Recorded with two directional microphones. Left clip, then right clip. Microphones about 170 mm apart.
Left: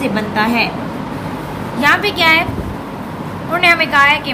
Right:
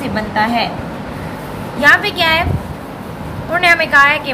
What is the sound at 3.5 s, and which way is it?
Speech, 20° right (ahead or behind).